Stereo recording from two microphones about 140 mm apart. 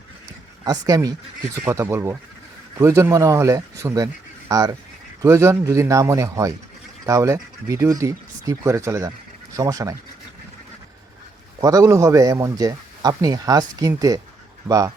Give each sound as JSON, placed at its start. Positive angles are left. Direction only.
{"t": 0.6, "sound": "a man's voice", "side_deg": -25}
{"t": 11.6, "sound": "a man's voice", "side_deg": -25}